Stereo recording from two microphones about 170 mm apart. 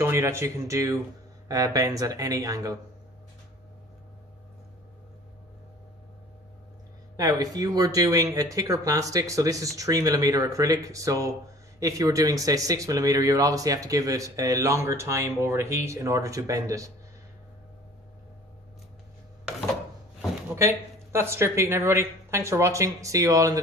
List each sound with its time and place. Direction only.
0.0 s speech: 15° right (ahead or behind)
7.2 s speech: 20° right (ahead or behind)
20.5 s speech: 15° right (ahead or behind)